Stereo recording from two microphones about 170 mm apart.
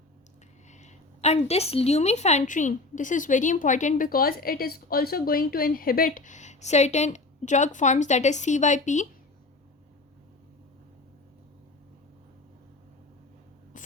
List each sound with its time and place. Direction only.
0.7 s a woman's voice: 45° left (ahead or behind)